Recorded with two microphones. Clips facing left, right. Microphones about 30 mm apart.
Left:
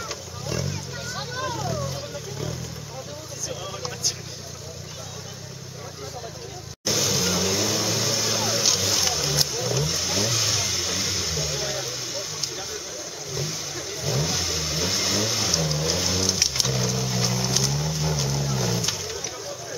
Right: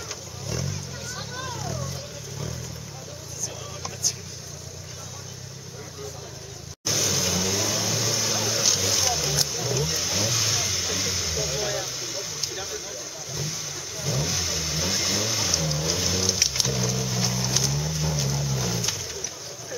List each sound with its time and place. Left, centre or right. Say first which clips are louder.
0.5 s vehicle: left 3 dB; centre
6.9 s vehicle: left 2 dB; centre
13.3 s vehicle: left 2 dB; centre